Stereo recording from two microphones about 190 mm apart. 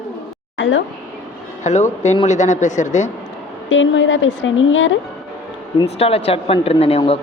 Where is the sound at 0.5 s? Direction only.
75° left (ahead or behind).